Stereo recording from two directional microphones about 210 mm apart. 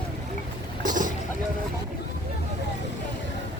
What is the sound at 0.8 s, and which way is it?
Vehicle, 40° right (ahead or behind).